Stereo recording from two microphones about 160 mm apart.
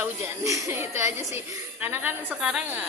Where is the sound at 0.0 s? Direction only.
20° right (ahead or behind).